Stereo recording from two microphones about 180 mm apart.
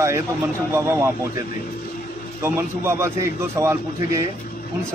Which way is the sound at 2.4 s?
15° right (ahead or behind).